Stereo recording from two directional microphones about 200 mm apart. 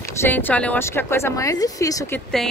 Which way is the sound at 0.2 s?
10° left (ahead or behind).